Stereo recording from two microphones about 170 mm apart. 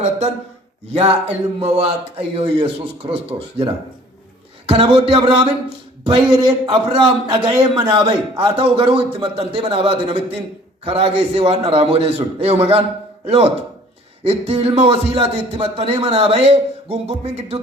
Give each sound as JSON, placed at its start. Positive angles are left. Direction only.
{"t": 0.9, "sound": "a man's voice", "side_deg": -40}
{"t": 14.3, "sound": "a man's voice", "side_deg": -35}